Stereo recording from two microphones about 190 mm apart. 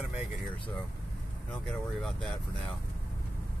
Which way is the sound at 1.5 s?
Centre (ahead or behind).